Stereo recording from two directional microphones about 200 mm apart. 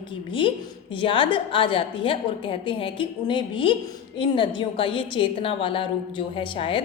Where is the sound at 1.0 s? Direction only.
25° left (ahead or behind).